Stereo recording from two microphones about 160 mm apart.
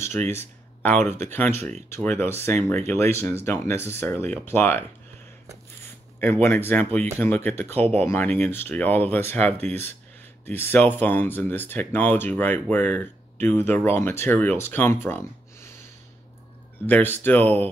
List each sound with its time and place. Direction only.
0.3 s a sound: 15° left (ahead or behind)
1.3 s speech: 15° left (ahead or behind)
6.1 s speech: 10° left (ahead or behind)
16.8 s speech: 10° left (ahead or behind)